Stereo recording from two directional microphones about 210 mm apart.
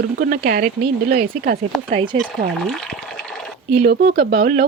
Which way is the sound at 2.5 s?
Centre (ahead or behind).